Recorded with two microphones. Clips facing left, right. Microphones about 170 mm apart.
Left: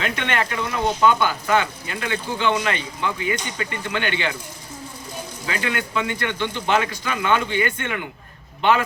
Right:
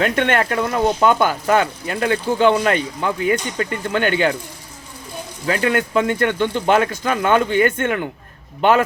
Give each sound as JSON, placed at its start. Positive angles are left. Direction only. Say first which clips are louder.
{"t": 0.0, "sound": "speech", "louder": "right 7 dB", "side_deg": -50}
{"t": 5.5, "sound": "speech", "louder": "right 8 dB", "side_deg": -45}